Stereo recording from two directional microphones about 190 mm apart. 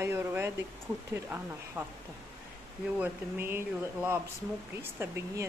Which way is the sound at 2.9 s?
10° right (ahead or behind).